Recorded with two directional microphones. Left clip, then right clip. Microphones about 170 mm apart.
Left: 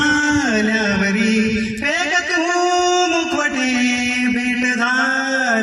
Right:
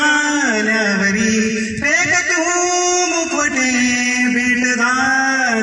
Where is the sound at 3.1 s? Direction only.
35° left (ahead or behind).